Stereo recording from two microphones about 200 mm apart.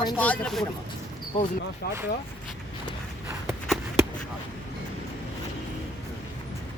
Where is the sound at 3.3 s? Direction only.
10° right (ahead or behind).